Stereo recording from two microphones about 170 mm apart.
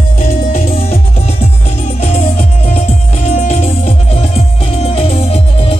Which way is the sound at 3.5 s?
40° left (ahead or behind).